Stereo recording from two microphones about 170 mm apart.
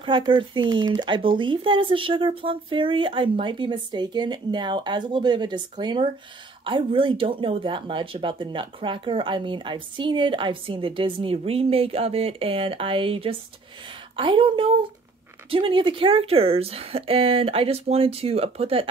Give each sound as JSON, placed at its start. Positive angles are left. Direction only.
{"t": 0.0, "sound": "speech", "side_deg": -30}